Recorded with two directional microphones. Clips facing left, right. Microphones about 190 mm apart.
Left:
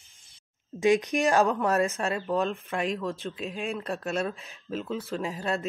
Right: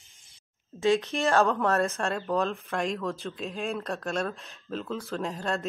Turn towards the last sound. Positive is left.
turn(degrees=5)  # may be behind; listen again after turning